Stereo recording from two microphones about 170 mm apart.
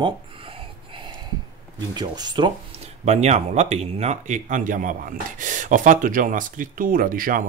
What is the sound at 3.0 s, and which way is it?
Speech, 40° right (ahead or behind).